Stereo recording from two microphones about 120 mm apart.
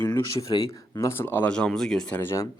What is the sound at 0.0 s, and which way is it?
Speech, 25° left (ahead or behind).